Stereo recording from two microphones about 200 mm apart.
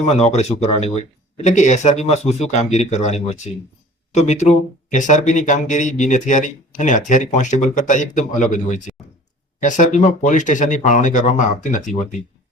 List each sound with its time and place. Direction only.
0.0 s speech: 30° left (ahead or behind)